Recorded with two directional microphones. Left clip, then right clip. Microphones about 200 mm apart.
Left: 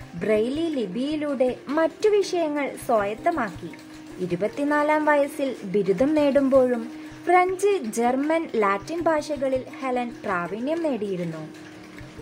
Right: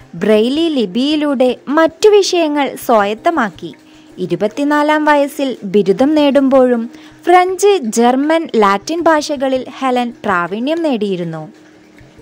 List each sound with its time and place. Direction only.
0.2 s a woman's voice: 45° right (ahead or behind)